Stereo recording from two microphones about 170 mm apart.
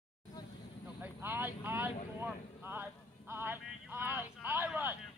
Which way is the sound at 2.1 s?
15° right (ahead or behind).